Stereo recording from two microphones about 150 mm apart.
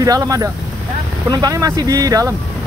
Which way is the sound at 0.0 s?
25° right (ahead or behind).